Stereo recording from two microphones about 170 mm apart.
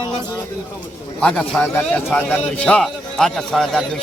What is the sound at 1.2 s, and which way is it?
A man's voice, 10° left (ahead or behind).